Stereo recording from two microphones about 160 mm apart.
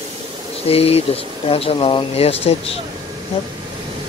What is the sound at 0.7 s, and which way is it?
Speech, 40° left (ahead or behind).